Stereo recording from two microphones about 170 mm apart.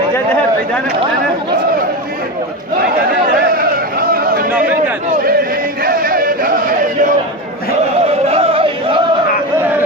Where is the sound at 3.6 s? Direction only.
60° right (ahead or behind).